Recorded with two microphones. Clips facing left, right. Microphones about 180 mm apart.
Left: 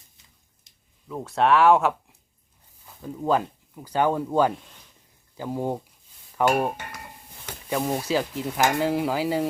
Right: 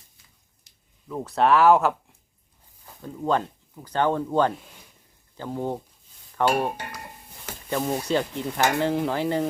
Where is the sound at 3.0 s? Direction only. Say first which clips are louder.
Left 1 dB; 5° left (ahead or behind).